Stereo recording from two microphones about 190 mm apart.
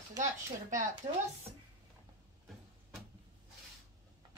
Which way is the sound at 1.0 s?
25° right (ahead or behind).